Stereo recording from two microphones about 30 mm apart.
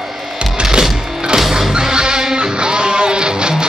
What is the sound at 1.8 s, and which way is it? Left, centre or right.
Music, right.